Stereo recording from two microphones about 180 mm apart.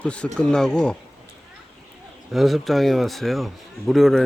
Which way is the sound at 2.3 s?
Centre (ahead or behind).